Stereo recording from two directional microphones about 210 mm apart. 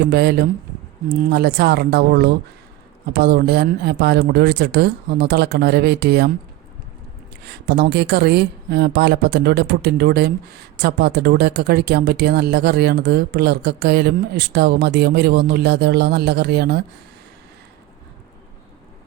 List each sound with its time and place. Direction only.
0.1 s speech: 50° right (ahead or behind)
7.4 s speech: 50° right (ahead or behind)